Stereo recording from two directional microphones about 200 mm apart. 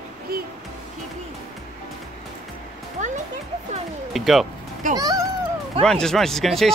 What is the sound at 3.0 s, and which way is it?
Music, 35° right (ahead or behind).